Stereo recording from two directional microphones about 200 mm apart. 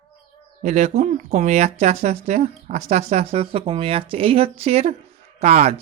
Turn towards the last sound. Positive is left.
turn(degrees=-35)  # may be behind; listen again after turning